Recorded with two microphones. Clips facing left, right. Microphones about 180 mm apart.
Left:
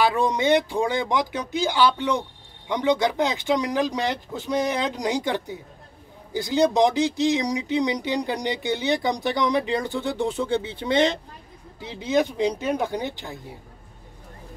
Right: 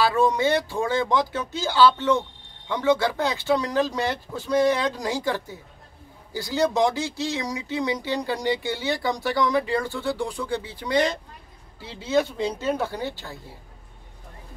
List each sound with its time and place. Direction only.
0.0 s speech: 15° left (ahead or behind)